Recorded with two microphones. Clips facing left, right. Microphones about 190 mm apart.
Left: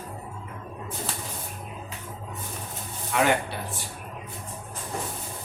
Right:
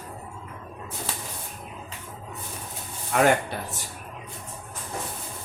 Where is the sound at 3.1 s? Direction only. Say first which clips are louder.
Right 3 dB; 45° right (ahead or behind).